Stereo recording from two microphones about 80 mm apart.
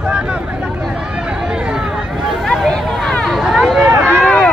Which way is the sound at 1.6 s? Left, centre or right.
Centre.